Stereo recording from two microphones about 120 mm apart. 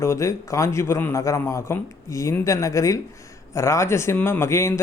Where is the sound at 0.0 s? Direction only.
25° left (ahead or behind).